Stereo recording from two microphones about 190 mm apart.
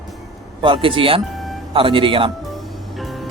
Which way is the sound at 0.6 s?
25° right (ahead or behind).